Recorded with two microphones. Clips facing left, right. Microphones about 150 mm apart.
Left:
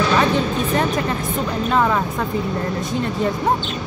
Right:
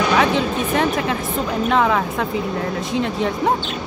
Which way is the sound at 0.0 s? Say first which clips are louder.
Even; 10° right (ahead or behind).